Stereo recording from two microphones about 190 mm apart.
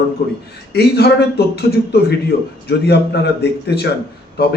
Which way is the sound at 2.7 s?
60° left (ahead or behind).